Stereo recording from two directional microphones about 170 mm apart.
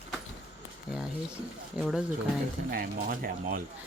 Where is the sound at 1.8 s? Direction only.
5° right (ahead or behind).